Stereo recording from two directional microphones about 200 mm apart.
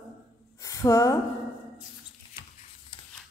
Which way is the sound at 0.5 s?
15° left (ahead or behind).